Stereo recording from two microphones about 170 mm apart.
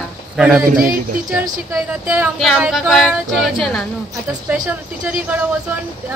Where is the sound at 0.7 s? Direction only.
55° right (ahead or behind).